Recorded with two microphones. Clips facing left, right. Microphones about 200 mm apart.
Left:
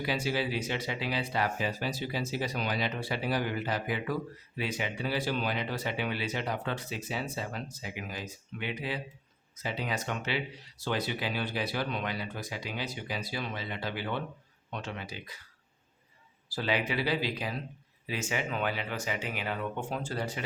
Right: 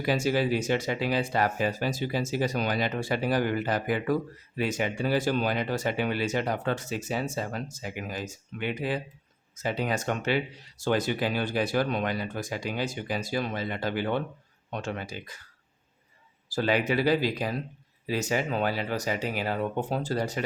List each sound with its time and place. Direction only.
0.0 s speech: 45° right (ahead or behind)
16.5 s speech: 45° right (ahead or behind)